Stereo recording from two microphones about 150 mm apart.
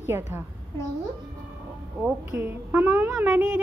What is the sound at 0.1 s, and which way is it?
Speech, 15° right (ahead or behind).